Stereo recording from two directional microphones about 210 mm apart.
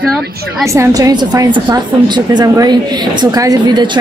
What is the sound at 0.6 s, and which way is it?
A woman's voice, 15° right (ahead or behind).